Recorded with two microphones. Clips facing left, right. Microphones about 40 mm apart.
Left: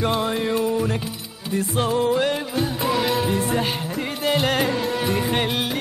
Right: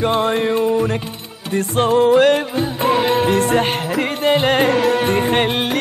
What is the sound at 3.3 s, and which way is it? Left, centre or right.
Music, right.